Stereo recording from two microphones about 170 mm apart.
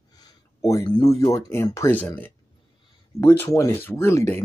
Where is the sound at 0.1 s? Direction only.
20° left (ahead or behind).